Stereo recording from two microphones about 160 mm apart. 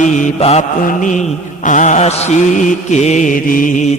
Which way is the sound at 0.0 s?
50° left (ahead or behind).